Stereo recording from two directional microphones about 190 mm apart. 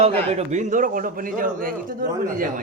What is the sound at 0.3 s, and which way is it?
A man's voice, 35° right (ahead or behind).